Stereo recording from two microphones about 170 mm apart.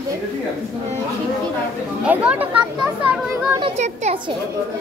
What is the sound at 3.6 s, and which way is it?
Speech, 40° right (ahead or behind).